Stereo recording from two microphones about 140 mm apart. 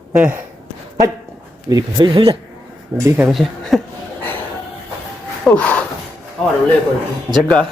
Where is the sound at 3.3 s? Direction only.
Centre (ahead or behind).